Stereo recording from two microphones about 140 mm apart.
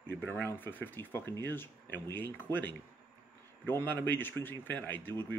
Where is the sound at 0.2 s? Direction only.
15° left (ahead or behind).